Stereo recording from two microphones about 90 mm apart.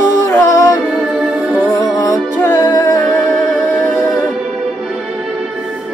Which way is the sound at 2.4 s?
25° left (ahead or behind).